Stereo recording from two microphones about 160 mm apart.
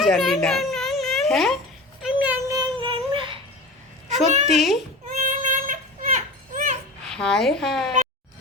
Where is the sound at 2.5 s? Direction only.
30° right (ahead or behind).